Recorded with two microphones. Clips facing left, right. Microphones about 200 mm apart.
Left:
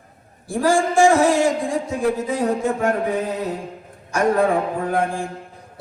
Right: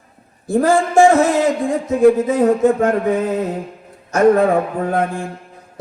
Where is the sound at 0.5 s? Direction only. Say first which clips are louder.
Right 4 dB; 45° right (ahead or behind).